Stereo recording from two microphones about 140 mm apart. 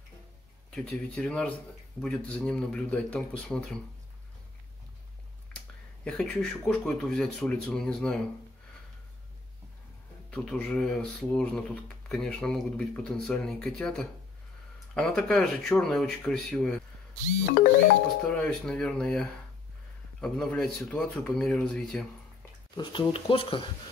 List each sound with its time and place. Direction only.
0.7 s a man's voice: 5° left (ahead or behind)
5.5 s a sound: 5° left (ahead or behind)
6.0 s a man's voice: 5° left (ahead or behind)
10.3 s speech: 5° left (ahead or behind)
17.5 s music: 90° left
18.2 s a man's voice: 5° left (ahead or behind)
22.8 s speech: 35° left (ahead or behind)